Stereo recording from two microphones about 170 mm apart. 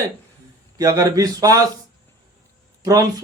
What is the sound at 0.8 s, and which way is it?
Speech, 20° right (ahead or behind).